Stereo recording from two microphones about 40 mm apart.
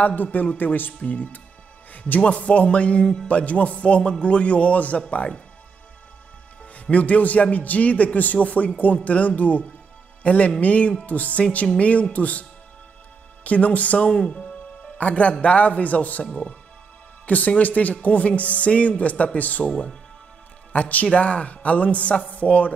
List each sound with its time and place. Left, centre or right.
0.0 s speech: left
2.2 s speech: left
6.6 s a man's voice: left
14.0 s speech: left
15.0 s speech: left
17.6 s speech: left
20.7 s speech: left